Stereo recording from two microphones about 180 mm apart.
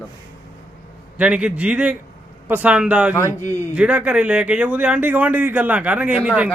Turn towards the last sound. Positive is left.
turn(degrees=-5)  # may be behind; listen again after turning